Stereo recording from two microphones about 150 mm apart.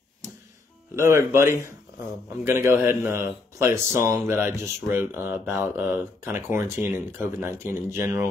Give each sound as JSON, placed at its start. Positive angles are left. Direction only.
{"t": 0.9, "sound": "speech", "side_deg": -20}